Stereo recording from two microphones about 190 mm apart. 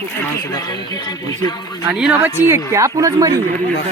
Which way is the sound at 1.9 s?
5° right (ahead or behind).